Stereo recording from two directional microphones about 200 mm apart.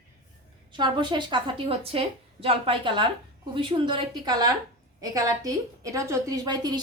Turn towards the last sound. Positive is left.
turn(degrees=-20)  # may be behind; listen again after turning